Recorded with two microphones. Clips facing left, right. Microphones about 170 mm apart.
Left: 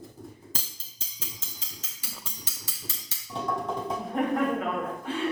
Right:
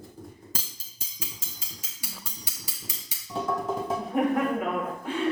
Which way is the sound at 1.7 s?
10° right (ahead or behind).